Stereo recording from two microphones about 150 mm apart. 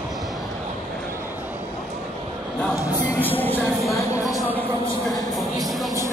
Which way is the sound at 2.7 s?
15° left (ahead or behind).